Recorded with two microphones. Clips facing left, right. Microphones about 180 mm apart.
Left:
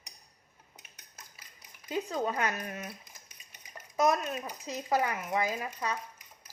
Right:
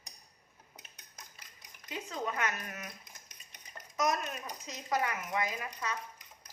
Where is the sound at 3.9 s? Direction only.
30° left (ahead or behind).